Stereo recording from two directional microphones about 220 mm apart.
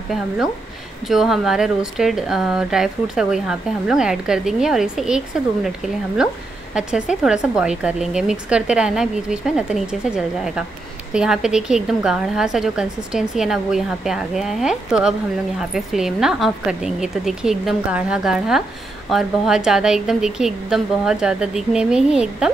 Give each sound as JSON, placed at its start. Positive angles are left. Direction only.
{"t": 1.0, "sound": "speech", "side_deg": 0}
{"t": 6.7, "sound": "speech", "side_deg": -5}